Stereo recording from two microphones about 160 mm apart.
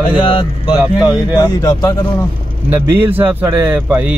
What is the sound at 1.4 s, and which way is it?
Speech, 25° left (ahead or behind).